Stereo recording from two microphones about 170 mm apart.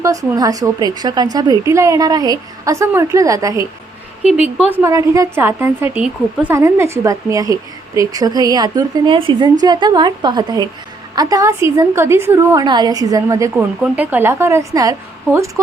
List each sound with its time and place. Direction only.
0.0 s a woman's voice: 20° right (ahead or behind)
4.7 s a woman's voice: 15° right (ahead or behind)